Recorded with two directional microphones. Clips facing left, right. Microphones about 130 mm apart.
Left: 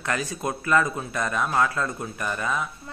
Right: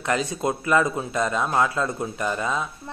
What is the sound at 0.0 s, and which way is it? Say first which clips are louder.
A man's voice: right 4 dB; 20° right (ahead or behind).